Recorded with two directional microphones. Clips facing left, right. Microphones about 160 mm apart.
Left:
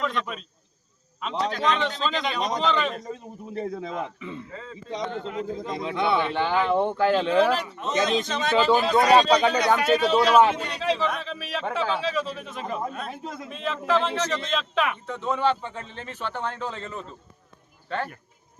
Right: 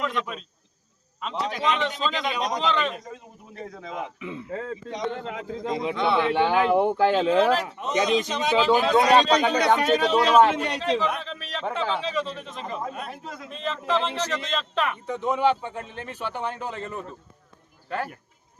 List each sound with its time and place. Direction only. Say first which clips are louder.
0.0 s a man's voice: even; 5° right (ahead or behind)
3.5 s a man's voice: left 7 dB; 30° left (ahead or behind)
3.9 s a man's voice: left 1 dB; 5° right (ahead or behind)
4.5 s speech: right 8 dB; 65° right (ahead or behind)
5.7 s a man's voice: right 1 dB; 15° right (ahead or behind); by 7.6 s centre (ahead or behind)
7.8 s a man's voice: right 1 dB; 15° right (ahead or behind)
8.5 s a man's voice: even; centre (ahead or behind)
15.0 s a man's voice: right 2 dB; 15° right (ahead or behind)